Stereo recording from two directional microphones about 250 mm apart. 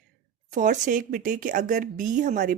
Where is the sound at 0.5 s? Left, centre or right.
Right.